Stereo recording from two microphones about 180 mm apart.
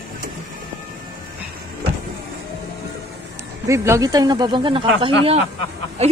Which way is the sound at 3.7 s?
15° right (ahead or behind).